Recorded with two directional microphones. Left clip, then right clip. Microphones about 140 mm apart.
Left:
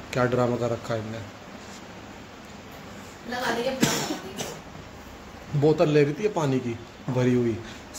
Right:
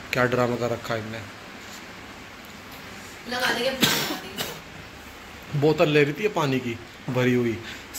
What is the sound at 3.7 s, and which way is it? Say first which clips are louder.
Music: right 3 dB; 30° left (ahead or behind).